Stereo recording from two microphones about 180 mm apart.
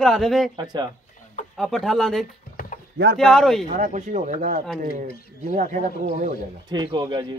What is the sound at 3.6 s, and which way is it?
Speech, 45° right (ahead or behind).